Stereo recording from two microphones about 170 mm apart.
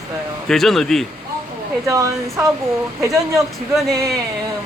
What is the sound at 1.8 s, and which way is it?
Speech, 20° right (ahead or behind).